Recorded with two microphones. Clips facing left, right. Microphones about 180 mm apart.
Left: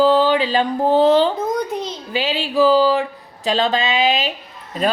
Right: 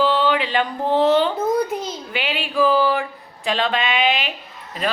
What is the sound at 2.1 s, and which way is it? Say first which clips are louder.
Speech: left 4 dB; 30° left (ahead or behind).